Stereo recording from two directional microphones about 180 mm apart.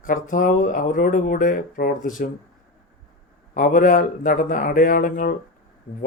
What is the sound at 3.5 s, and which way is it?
Speech, 50° left (ahead or behind).